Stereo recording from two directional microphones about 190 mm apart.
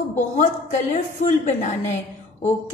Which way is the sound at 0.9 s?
40° left (ahead or behind).